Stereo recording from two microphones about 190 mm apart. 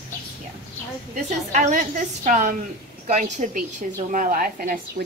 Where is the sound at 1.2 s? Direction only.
40° right (ahead or behind).